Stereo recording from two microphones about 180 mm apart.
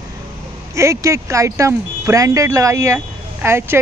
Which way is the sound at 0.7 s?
15° right (ahead or behind).